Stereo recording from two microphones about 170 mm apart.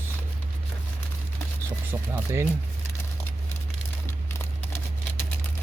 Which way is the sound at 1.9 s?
10° right (ahead or behind).